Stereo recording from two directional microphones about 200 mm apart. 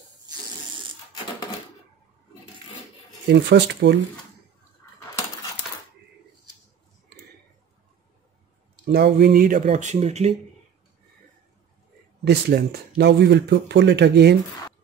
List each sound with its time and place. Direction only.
3.3 s speech: 60° right (ahead or behind)
8.8 s speech: 55° right (ahead or behind); by 10.3 s 35° right (ahead or behind)
12.3 s speech: 55° right (ahead or behind)